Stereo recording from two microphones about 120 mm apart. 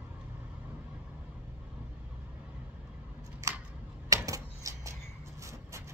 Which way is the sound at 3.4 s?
25° right (ahead or behind).